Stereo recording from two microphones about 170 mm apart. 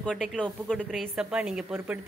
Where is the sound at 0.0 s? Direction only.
5° left (ahead or behind).